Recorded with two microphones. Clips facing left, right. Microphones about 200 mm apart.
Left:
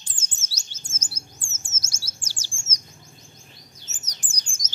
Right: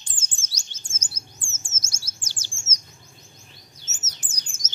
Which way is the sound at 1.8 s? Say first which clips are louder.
Left 1 dB; 10° left (ahead or behind).